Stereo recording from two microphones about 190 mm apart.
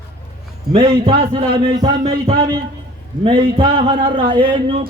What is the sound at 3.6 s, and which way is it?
Speech, 30° right (ahead or behind).